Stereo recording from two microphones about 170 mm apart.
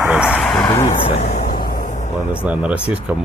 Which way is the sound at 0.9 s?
35° left (ahead or behind).